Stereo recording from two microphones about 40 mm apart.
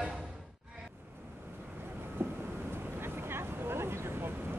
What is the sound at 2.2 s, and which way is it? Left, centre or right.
Vehicle, right.